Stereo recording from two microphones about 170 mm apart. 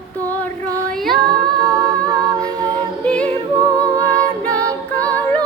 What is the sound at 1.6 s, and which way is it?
Humming, 20° right (ahead or behind).